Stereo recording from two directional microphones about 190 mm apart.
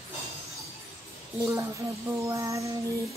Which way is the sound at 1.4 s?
15° right (ahead or behind).